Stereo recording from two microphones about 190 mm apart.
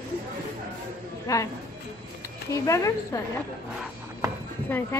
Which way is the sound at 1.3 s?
15° left (ahead or behind).